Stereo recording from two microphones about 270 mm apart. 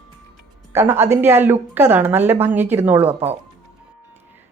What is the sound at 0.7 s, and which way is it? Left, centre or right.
Speech, centre.